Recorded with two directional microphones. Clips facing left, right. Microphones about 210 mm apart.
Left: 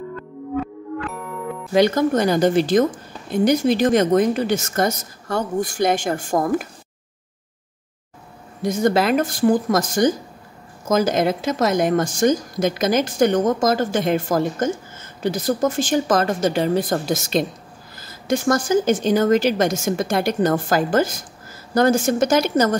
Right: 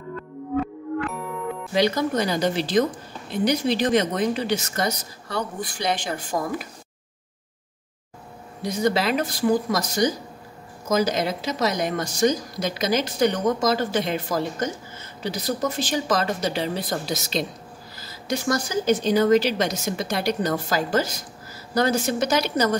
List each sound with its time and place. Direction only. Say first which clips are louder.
1.7 s a woman's voice: left 6 dB; 50° left (ahead or behind)
8.6 s a woman's voice: left 4 dB; 50° left (ahead or behind)